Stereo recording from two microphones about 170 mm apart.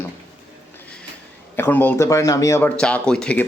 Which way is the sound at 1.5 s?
10° left (ahead or behind).